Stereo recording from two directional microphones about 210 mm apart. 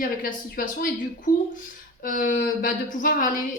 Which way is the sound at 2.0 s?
40° left (ahead or behind).